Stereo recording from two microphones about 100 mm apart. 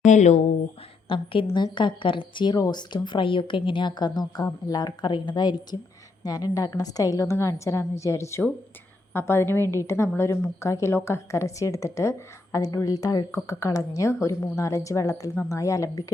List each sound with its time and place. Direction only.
1.0 s a woman's voice: 60° left (ahead or behind); by 16.1 s 35° left (ahead or behind)